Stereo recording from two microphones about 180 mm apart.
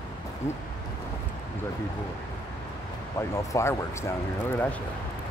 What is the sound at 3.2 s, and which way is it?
Speech, 15° left (ahead or behind).